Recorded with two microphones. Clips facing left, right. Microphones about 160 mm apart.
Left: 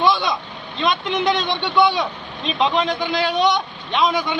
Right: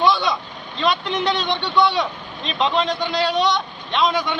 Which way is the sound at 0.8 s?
Centre (ahead or behind).